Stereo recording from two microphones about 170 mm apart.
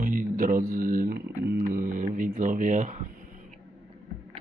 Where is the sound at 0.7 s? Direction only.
55° right (ahead or behind).